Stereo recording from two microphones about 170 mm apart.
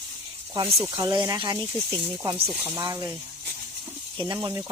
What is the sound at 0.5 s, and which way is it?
Speech, 25° right (ahead or behind).